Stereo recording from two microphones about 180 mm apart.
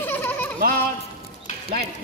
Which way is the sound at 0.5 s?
55° right (ahead or behind).